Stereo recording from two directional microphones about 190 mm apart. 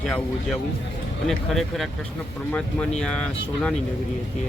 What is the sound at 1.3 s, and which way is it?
Speech, centre (ahead or behind).